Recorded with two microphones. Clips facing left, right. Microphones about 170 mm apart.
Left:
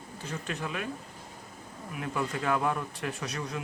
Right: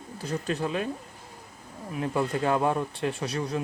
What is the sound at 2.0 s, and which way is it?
Speech, 30° right (ahead or behind).